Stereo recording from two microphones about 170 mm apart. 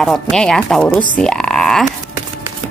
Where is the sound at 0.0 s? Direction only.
Centre (ahead or behind).